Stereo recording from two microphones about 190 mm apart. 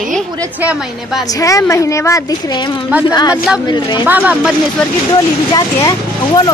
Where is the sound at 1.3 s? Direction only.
15° left (ahead or behind).